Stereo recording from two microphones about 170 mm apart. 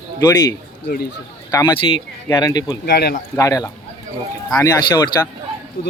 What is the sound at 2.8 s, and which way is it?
Speech, 65° left (ahead or behind).